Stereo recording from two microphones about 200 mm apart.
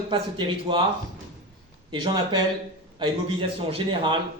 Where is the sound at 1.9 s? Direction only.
20° right (ahead or behind).